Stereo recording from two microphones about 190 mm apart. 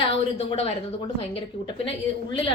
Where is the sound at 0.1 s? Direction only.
30° left (ahead or behind).